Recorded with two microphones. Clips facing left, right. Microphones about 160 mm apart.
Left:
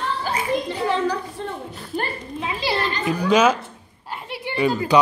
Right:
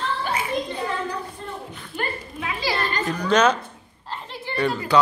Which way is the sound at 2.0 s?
25° left (ahead or behind).